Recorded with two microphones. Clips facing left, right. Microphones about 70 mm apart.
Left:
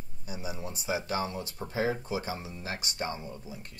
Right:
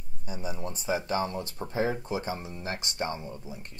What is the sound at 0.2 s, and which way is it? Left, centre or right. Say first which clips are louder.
Speech: right 3 dB; right.